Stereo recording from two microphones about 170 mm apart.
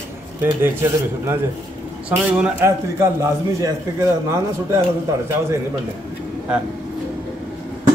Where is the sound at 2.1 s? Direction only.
10° right (ahead or behind).